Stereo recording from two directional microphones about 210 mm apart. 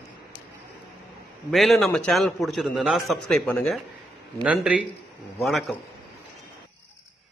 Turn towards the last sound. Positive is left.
turn(degrees=0)  # may be behind; listen again after turning